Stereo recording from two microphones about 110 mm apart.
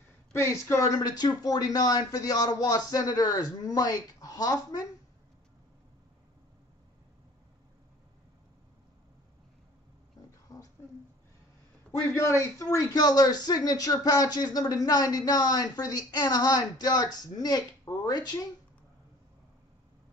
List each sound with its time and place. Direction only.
0.3 s a man's voice: 25° left (ahead or behind)
10.5 s a sound: 30° left (ahead or behind)
11.9 s a man's voice: 25° left (ahead or behind)